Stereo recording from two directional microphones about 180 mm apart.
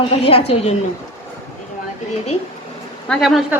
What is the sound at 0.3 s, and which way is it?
Speech, 35° left (ahead or behind).